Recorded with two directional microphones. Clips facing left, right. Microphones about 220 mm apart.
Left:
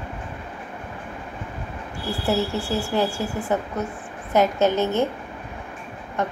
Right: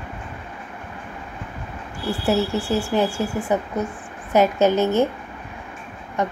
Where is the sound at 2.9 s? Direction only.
15° right (ahead or behind).